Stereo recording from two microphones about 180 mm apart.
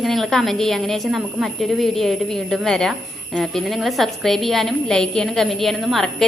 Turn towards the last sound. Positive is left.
turn(degrees=0)  # may be behind; listen again after turning